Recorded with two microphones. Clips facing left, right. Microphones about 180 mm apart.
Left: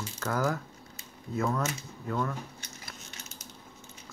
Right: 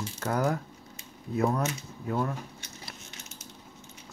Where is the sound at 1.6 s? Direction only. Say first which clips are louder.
Right 2 dB; 25° right (ahead or behind).